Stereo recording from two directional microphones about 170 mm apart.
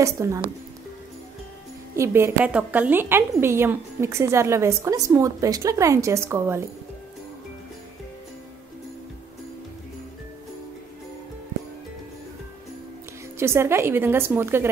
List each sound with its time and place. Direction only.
0.0 s a woman's voice: 20° right (ahead or behind)
2.0 s a woman's voice: 15° right (ahead or behind)
13.4 s a woman's voice: 15° right (ahead or behind)